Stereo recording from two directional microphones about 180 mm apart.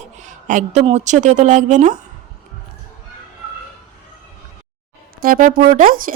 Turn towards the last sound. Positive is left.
turn(degrees=-50)  # may be behind; listen again after turning